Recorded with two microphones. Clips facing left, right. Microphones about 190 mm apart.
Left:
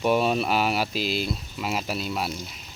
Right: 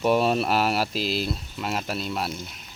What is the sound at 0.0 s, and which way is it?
Speech, centre (ahead or behind).